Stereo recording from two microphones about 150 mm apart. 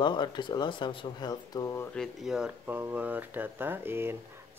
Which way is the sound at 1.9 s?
Centre (ahead or behind).